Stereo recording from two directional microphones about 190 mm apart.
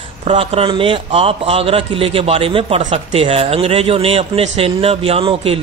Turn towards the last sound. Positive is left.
turn(degrees=-30)  # may be behind; listen again after turning